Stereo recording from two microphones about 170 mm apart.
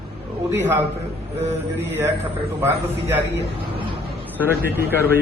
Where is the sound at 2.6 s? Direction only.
15° right (ahead or behind).